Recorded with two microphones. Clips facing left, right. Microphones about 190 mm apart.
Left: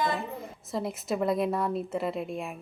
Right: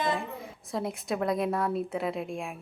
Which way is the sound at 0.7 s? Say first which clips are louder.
Left 1 dB; centre (ahead or behind).